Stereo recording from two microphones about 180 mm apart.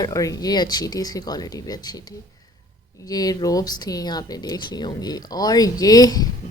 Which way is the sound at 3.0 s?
20° left (ahead or behind).